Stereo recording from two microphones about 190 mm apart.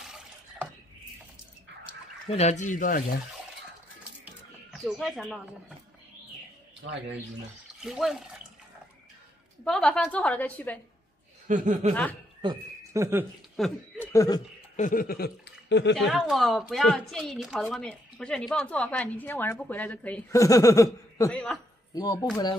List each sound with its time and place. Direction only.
2.2 s speech: 35° left (ahead or behind)
4.7 s a woman's voice: centre (ahead or behind)
6.8 s speech: 80° right
7.8 s speech: 5° right (ahead or behind)
9.7 s a woman's voice: 5° left (ahead or behind)
11.4 s speech: 40° right (ahead or behind)
11.9 s a woman's voice: 10° left (ahead or behind)
12.4 s a sound: 20° right (ahead or behind)
13.6 s speech: 15° left (ahead or behind)
14.8 s speech: 45° left (ahead or behind); by 16.1 s 65° left (ahead or behind)
16.1 s a woman's voice: centre (ahead or behind); by 21.3 s 15° left (ahead or behind)
21.3 s a woman's voice: 5° left (ahead or behind)
21.9 s speech: 20° left (ahead or behind)